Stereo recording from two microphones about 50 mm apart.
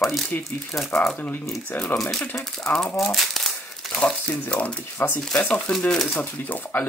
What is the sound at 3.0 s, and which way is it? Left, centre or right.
Crumpling, centre.